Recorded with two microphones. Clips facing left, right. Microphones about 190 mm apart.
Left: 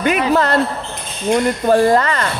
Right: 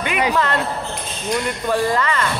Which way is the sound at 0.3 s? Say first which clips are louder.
Left 5 dB; 40° left (ahead or behind).